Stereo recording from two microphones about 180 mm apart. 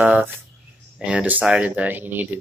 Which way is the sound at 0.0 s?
10° right (ahead or behind).